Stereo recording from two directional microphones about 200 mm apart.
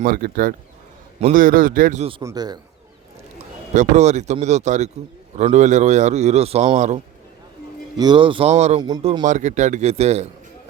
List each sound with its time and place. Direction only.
0.0 s a man's voice: 45° right (ahead or behind); by 2.2 s 30° right (ahead or behind)
2.2 s speech: 20° right (ahead or behind)
3.8 s a man's voice: 35° right (ahead or behind)
7.9 s a man's voice: 20° right (ahead or behind)